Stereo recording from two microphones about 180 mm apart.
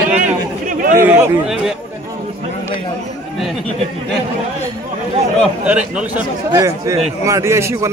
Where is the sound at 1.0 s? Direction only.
5° right (ahead or behind).